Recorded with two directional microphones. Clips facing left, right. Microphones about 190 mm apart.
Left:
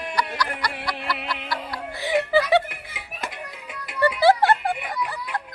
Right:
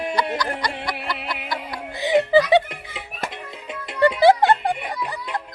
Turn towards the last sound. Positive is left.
turn(degrees=-20)  # may be behind; listen again after turning